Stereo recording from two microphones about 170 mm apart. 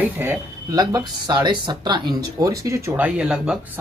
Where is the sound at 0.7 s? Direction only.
25° right (ahead or behind).